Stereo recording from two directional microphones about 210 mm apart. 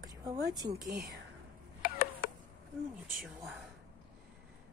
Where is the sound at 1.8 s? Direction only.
40° left (ahead or behind).